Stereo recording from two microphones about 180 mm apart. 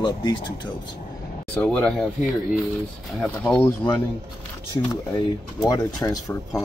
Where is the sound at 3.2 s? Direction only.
5° left (ahead or behind).